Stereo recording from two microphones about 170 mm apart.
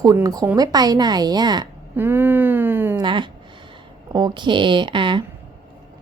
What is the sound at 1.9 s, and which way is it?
Speech, 10° right (ahead or behind).